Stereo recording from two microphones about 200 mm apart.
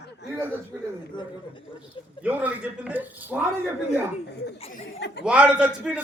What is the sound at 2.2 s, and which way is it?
Speech, 10° right (ahead or behind).